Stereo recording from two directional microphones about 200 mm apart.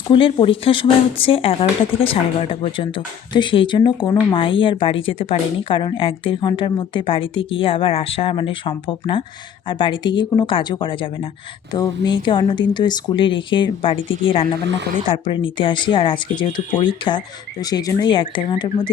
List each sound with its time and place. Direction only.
0.1 s speech: 25° left (ahead or behind)
14.6 s speech: 60° right (ahead or behind)
15.0 s speech: 25° left (ahead or behind)